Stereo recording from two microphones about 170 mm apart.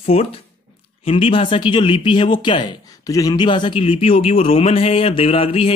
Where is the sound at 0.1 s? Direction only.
35° left (ahead or behind).